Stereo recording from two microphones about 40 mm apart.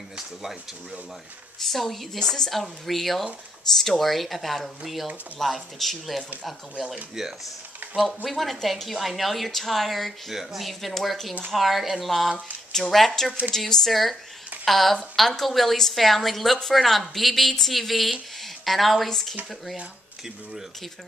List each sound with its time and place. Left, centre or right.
1.6 s speech: centre
2.1 s a woman's voice: centre
2.5 s a woman's voice: centre